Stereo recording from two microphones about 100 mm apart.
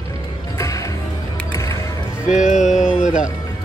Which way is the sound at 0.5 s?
30° left (ahead or behind).